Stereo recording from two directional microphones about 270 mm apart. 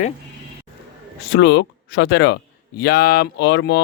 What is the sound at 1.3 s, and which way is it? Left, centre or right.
Speech, left.